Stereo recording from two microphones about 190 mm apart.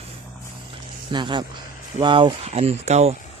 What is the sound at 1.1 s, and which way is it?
Speech, 25° right (ahead or behind).